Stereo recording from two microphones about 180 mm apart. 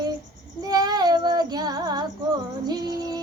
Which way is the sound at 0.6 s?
20° right (ahead or behind).